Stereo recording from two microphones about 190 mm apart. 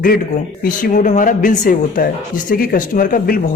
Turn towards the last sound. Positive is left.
turn(degrees=45)  # may be behind; listen again after turning